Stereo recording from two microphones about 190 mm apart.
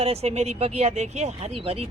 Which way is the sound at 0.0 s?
35° right (ahead or behind).